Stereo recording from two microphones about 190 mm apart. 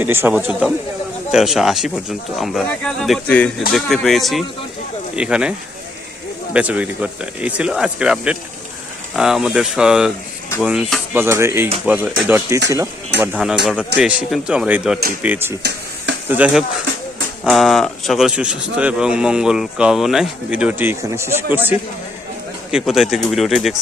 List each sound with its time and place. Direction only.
0.0 s a man's voice: 10° right (ahead or behind)
11.1 s a man's voice: 10° right (ahead or behind)